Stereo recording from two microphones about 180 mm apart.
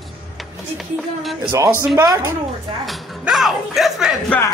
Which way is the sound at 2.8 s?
Centre (ahead or behind).